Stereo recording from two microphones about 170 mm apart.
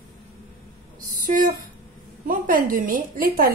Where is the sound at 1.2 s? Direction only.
50° right (ahead or behind).